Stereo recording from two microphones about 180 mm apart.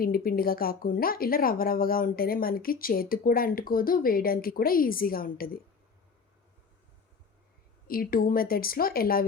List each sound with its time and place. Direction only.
0.0 s a woman's voice: 55° left (ahead or behind)
7.9 s a woman's voice: 55° left (ahead or behind)